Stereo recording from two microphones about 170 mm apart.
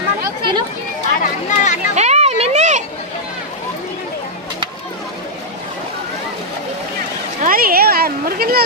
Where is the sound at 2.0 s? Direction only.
40° right (ahead or behind).